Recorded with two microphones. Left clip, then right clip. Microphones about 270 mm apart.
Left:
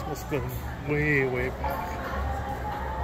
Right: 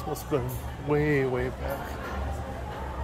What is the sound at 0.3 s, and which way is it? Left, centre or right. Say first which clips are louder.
Speech: right 3 dB; centre.